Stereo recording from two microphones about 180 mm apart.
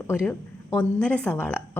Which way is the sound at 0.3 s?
10° left (ahead or behind).